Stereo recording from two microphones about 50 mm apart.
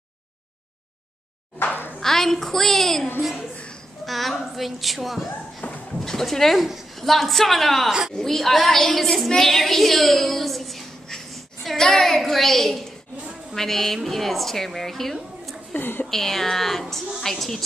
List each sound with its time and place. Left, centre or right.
1.6 s a sound: left
2.0 s a woman's voice: centre
5.6 s a sound: left
5.9 s a woman's voice: centre
15.7 s a woman's voice: left
16.1 s a woman's voice: centre